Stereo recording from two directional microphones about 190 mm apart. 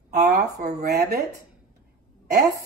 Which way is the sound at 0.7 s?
55° right (ahead or behind).